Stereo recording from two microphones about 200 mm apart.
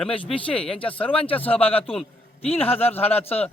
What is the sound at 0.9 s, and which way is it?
Speech, 5° left (ahead or behind).